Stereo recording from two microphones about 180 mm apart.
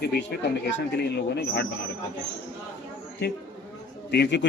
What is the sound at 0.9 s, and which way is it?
Speech, 65° left (ahead or behind).